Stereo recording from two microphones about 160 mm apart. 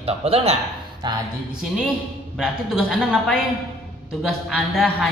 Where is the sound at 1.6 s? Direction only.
Centre (ahead or behind).